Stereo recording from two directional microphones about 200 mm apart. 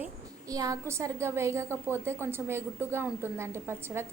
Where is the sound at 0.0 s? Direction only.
15° right (ahead or behind).